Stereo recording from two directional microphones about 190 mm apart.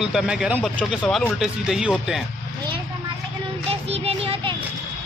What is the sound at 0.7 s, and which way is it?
Speech, 5° left (ahead or behind).